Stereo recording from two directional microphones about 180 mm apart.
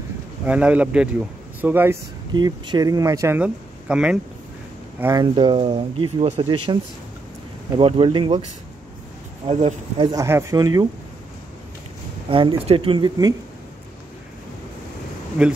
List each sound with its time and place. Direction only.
0.5 s speech: 5° right (ahead or behind)
2.3 s speech: 25° right (ahead or behind); by 4.2 s 5° right (ahead or behind)
5.0 s speech: 20° right (ahead or behind)
9.5 s speech: 35° right (ahead or behind)
10.1 s speech: 15° right (ahead or behind)
12.3 s speech: 30° right (ahead or behind)
15.4 s speech: 5° right (ahead or behind)